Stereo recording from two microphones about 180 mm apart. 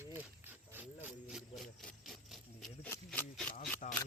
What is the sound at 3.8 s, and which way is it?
Speech, 45° left (ahead or behind).